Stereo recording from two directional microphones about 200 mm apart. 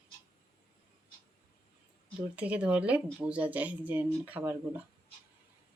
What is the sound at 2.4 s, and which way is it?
Speech, 5° right (ahead or behind).